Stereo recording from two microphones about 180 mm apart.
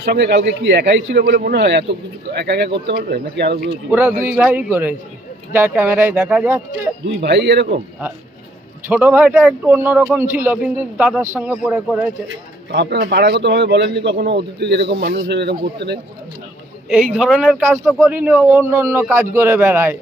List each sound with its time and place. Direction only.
0.0 s speech: 60° right (ahead or behind)
4.3 s a man's voice: 10° right (ahead or behind)
7.2 s speech: 70° right (ahead or behind)
8.9 s a man's voice: 10° right (ahead or behind)
12.7 s speech: 70° right (ahead or behind)
16.9 s speech: centre (ahead or behind)
18.3 s a man's voice: 10° right (ahead or behind)